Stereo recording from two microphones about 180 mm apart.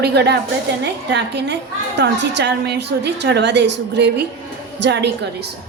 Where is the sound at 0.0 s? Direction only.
65° right (ahead or behind).